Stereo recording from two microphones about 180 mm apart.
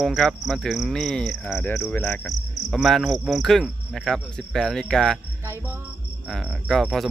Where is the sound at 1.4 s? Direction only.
15° left (ahead or behind).